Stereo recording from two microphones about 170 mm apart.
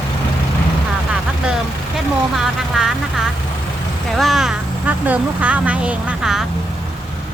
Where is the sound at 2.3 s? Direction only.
Centre (ahead or behind).